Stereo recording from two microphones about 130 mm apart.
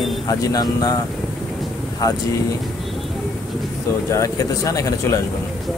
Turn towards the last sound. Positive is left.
turn(degrees=25)  # may be behind; listen again after turning